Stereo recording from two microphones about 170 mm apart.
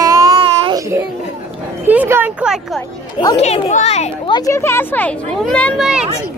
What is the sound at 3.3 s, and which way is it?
Speech, 35° left (ahead or behind).